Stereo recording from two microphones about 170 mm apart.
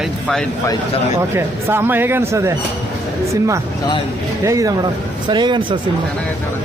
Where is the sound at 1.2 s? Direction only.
15° right (ahead or behind).